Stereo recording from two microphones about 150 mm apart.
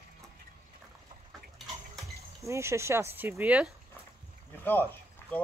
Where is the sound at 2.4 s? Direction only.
20° right (ahead or behind).